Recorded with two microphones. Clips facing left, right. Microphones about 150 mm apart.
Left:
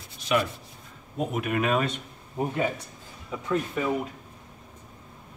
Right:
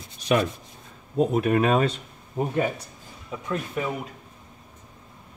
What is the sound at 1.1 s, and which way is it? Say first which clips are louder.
Speech: right 7 dB; 35° right (ahead or behind).